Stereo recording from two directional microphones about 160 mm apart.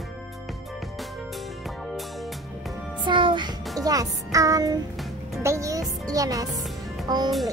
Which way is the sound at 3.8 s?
20° right (ahead or behind).